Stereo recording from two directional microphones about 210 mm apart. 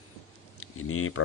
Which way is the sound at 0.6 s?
90° left.